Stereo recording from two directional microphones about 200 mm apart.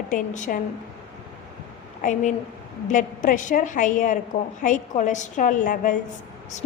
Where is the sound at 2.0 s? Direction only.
40° left (ahead or behind).